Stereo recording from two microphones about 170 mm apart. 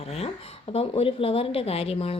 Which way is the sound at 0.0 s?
35° left (ahead or behind).